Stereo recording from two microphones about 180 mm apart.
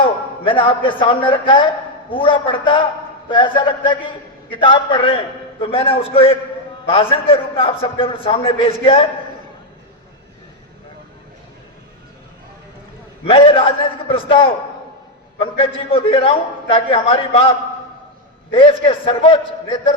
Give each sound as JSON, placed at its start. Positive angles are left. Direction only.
{"t": 0.0, "sound": "a man's voice", "side_deg": 30}
{"t": 13.2, "sound": "a man's voice", "side_deg": 30}
{"t": 18.5, "sound": "a man's voice", "side_deg": 30}